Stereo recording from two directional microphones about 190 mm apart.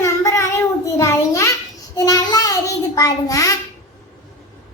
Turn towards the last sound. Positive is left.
turn(degrees=15)  # may be behind; listen again after turning